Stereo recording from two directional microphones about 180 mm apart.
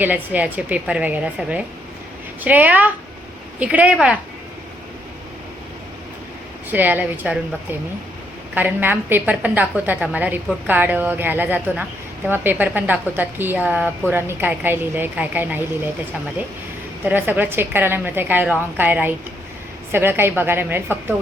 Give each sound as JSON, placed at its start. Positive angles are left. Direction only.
{"t": 0.0, "sound": "a woman's voice", "side_deg": -10}
{"t": 6.7, "sound": "a woman's voice", "side_deg": -10}
{"t": 17.1, "sound": "a woman's voice", "side_deg": -10}